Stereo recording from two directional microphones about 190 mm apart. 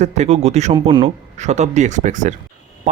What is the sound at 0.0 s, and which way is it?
Speech, 35° right (ahead or behind).